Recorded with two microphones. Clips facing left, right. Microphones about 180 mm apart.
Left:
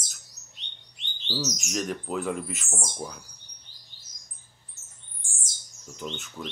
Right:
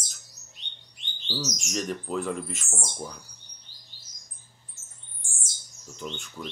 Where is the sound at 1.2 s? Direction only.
Centre (ahead or behind).